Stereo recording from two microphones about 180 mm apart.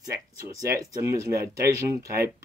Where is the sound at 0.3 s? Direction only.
20° right (ahead or behind).